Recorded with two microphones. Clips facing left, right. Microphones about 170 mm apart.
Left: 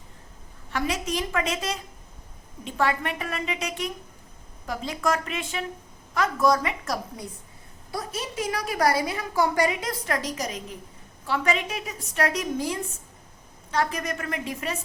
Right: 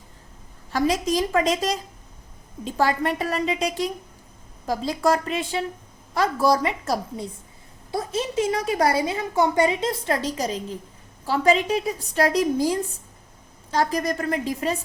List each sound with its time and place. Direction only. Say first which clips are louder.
0.7 s a woman's voice: right 6 dB; 35° right (ahead or behind)